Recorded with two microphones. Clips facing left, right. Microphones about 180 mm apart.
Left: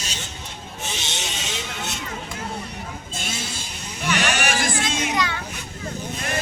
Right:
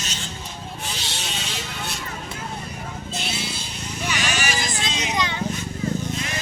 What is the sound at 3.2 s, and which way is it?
Sheep, 45° left (ahead or behind).